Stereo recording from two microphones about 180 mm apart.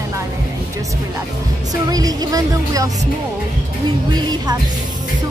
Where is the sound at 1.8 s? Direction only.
20° right (ahead or behind).